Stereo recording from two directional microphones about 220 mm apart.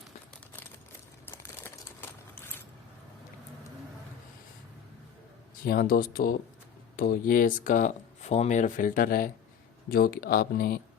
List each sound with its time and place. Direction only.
1.3 s crumpling: 10° left (ahead or behind)
5.6 s speech: 40° left (ahead or behind)